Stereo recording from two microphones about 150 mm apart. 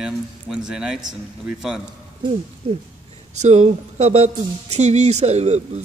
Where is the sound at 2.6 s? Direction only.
40° right (ahead or behind).